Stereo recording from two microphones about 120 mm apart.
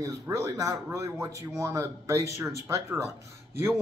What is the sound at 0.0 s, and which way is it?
Speech, 25° right (ahead or behind).